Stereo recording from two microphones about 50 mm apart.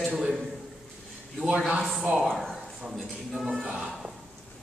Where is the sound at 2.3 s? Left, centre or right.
Centre.